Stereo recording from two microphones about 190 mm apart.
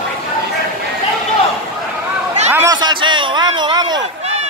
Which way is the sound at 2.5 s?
20° right (ahead or behind).